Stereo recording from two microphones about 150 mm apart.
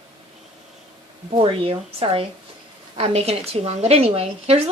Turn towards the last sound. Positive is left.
turn(degrees=-45)  # may be behind; listen again after turning